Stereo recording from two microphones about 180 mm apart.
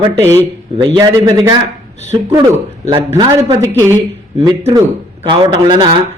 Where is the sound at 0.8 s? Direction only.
25° right (ahead or behind).